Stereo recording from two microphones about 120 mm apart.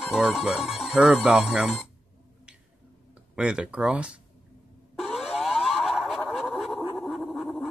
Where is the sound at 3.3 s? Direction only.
5° right (ahead or behind).